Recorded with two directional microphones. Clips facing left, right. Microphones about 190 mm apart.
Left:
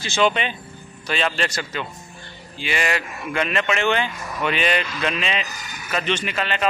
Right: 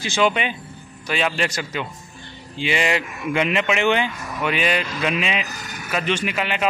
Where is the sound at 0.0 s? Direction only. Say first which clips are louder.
Even; 10° right (ahead or behind).